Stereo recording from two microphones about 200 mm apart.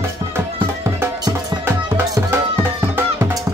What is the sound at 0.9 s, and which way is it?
Music, 10° right (ahead or behind).